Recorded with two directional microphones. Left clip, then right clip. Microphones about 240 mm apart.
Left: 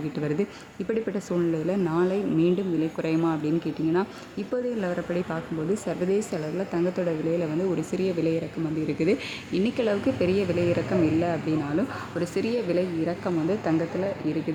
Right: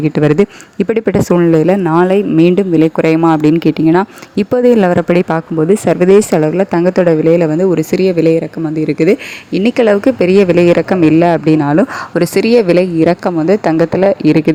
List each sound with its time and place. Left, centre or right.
0.2 s speech: right